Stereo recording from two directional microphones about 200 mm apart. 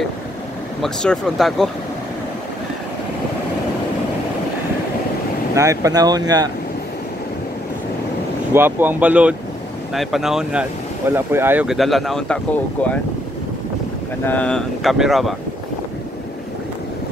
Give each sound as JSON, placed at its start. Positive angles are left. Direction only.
{"t": 0.8, "sound": "speech", "side_deg": 5}
{"t": 5.5, "sound": "speech", "side_deg": -15}
{"t": 8.5, "sound": "speech", "side_deg": -10}
{"t": 14.2, "sound": "speech", "side_deg": 5}